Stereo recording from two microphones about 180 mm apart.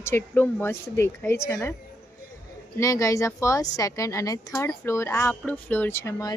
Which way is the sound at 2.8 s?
15° left (ahead or behind).